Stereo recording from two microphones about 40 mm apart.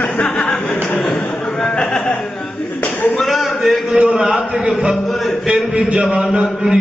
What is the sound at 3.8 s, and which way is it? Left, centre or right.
Speech, right.